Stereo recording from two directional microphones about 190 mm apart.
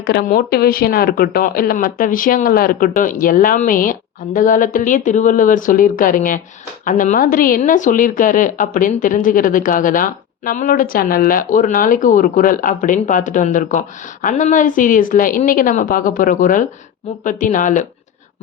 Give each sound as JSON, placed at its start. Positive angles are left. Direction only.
{"t": 0.0, "sound": "a woman's voice", "side_deg": 55}